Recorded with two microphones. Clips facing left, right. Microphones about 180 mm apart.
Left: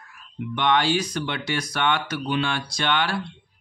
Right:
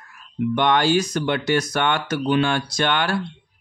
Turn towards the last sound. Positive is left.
turn(degrees=-45)  # may be behind; listen again after turning